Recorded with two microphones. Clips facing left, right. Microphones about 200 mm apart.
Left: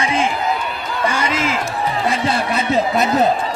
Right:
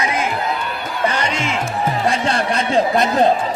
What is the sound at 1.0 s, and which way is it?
Speech, 10° left (ahead or behind).